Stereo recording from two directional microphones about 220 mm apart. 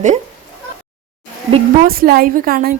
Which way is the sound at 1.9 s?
45° right (ahead or behind).